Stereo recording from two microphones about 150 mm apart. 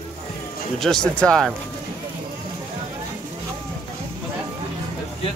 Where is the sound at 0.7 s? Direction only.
5° left (ahead or behind).